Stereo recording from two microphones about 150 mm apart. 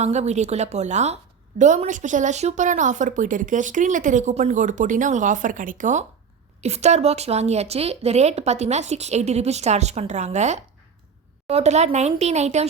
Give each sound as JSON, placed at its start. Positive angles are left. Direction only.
{"t": 0.0, "sound": "a woman's voice", "side_deg": -50}